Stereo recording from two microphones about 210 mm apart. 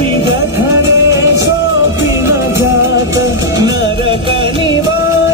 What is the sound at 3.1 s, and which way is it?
Music, 15° right (ahead or behind).